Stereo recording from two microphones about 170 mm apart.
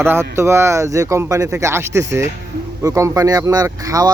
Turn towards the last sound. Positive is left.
turn(degrees=-20)  # may be behind; listen again after turning